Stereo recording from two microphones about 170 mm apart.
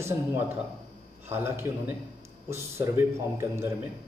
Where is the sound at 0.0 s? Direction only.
15° right (ahead or behind).